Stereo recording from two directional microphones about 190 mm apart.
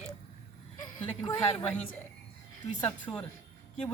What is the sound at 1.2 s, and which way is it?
Speech, 20° left (ahead or behind).